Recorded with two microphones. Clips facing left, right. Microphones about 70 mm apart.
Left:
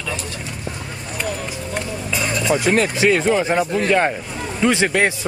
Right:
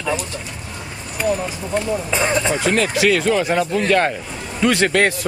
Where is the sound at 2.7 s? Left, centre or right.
Left.